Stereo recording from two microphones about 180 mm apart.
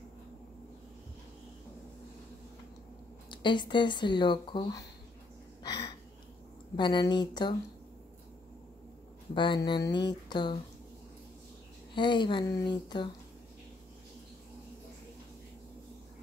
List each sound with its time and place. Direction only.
3.3 s speech: 25° left (ahead or behind)
5.6 s a sound: 25° left (ahead or behind)
6.8 s speech: 25° left (ahead or behind)
9.3 s speech: 25° left (ahead or behind)
11.9 s speech: 25° left (ahead or behind)